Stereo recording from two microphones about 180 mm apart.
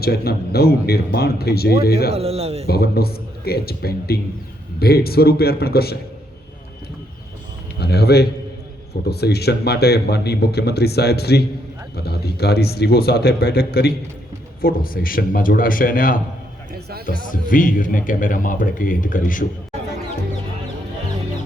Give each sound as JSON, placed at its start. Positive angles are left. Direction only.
{"t": 0.0, "sound": "speech", "side_deg": 60}
{"t": 2.1, "sound": "speech", "side_deg": -35}
{"t": 2.6, "sound": "speech", "side_deg": 60}
{"t": 7.8, "sound": "a man's voice", "side_deg": 65}